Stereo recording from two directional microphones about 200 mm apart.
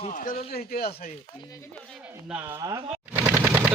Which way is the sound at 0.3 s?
50° left (ahead or behind).